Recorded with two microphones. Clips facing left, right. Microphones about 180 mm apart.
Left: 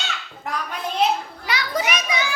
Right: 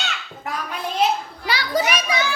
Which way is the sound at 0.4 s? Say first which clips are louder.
Even; centre (ahead or behind).